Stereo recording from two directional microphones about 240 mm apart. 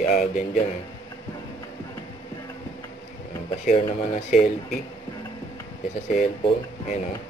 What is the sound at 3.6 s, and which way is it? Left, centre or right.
Speech, left.